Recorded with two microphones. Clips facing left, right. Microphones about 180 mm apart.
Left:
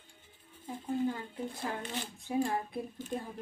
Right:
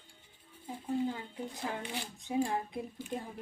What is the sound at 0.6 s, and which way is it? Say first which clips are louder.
Speech: left 1 dB; 10° right (ahead or behind).